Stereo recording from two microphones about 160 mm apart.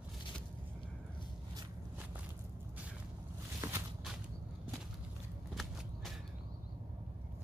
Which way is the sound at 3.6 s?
15° right (ahead or behind).